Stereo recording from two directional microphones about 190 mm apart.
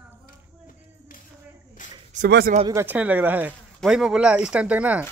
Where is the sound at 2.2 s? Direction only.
55° right (ahead or behind).